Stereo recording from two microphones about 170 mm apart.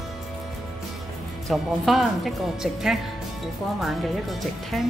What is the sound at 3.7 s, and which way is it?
Speech, centre (ahead or behind).